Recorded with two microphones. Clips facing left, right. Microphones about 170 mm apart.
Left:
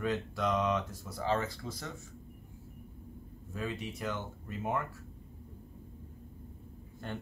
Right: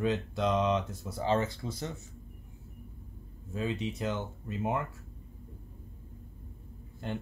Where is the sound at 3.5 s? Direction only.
25° right (ahead or behind).